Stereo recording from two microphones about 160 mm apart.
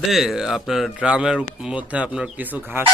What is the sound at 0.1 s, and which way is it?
Speech, centre (ahead or behind).